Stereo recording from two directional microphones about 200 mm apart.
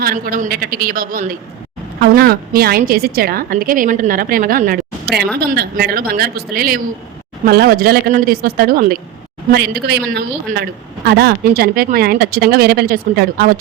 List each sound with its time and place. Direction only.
0.0 s a woman's voice: 45° right (ahead or behind)